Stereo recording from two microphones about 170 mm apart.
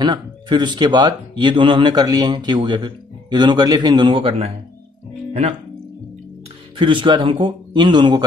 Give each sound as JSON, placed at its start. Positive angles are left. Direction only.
{"t": 0.0, "sound": "speech", "side_deg": -25}
{"t": 6.8, "sound": "speech", "side_deg": -30}